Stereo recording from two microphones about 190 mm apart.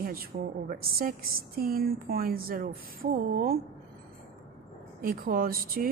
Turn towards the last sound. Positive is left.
turn(degrees=-50)  # may be behind; listen again after turning